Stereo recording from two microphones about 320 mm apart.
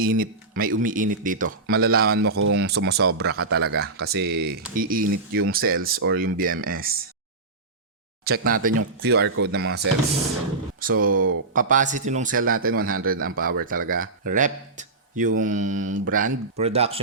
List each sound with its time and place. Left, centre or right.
0.0 s speech: right
8.2 s speech: right